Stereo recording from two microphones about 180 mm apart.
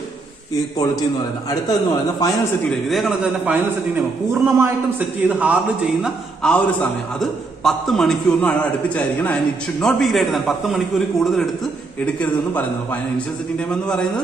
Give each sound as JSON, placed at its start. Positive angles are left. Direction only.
{"t": 1.5, "sound": "a man's voice", "side_deg": 20}
{"t": 2.7, "sound": "a man's voice", "side_deg": 0}
{"t": 6.0, "sound": "a man's voice", "side_deg": 5}